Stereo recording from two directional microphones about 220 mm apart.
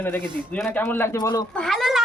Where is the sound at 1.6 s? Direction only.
Centre (ahead or behind).